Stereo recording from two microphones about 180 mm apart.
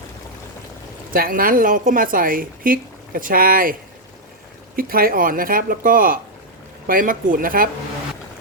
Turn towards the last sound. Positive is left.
turn(degrees=-50)  # may be behind; listen again after turning